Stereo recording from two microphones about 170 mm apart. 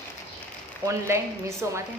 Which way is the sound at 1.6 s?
15° right (ahead or behind).